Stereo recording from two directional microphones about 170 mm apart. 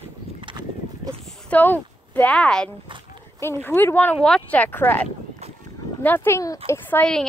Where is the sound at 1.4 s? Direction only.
10° left (ahead or behind).